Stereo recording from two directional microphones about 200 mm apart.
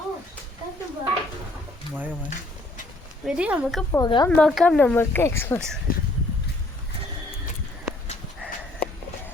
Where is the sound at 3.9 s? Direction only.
20° left (ahead or behind).